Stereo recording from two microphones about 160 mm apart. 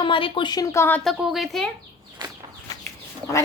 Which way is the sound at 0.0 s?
30° left (ahead or behind).